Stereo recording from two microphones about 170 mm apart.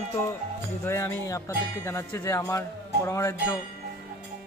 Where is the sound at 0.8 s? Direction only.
15° left (ahead or behind).